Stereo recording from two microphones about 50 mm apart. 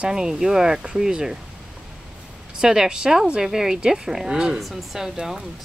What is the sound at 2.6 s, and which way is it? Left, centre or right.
Speech, centre.